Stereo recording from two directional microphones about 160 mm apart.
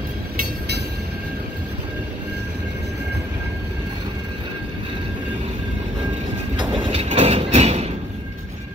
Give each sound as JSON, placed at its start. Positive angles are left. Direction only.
{"t": 6.6, "sound": "music", "side_deg": -35}